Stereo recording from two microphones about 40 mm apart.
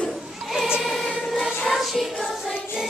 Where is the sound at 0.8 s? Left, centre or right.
Centre.